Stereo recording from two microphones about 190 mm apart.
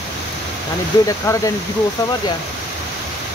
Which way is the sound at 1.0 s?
15° left (ahead or behind).